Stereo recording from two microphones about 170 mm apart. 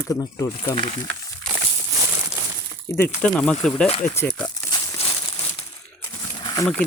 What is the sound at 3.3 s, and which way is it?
Speech, 5° left (ahead or behind).